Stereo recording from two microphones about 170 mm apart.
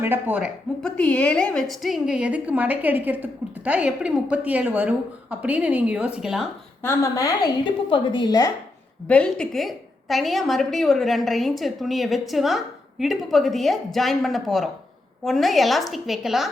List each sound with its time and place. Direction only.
0.0 s a woman's voice: 10° right (ahead or behind)
0.8 s a woman's voice: 5° left (ahead or behind)
6.8 s a woman's voice: 20° left (ahead or behind)
9.0 s a woman's voice: 5° left (ahead or behind)